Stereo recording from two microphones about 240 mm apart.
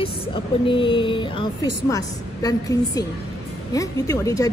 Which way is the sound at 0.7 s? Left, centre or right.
Left.